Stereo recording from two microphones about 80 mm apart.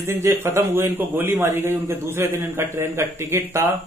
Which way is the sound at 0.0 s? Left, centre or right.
Right.